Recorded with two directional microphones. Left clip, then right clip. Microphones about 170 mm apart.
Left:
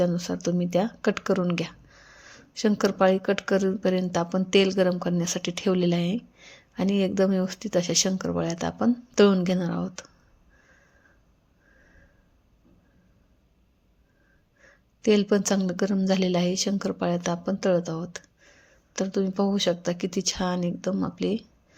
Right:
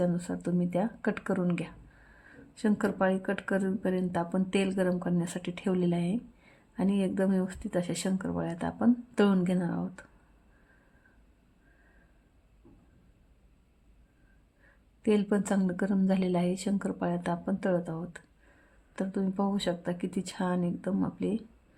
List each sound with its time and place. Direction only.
0.0 s speech: 20° left (ahead or behind)
15.0 s speech: 20° left (ahead or behind)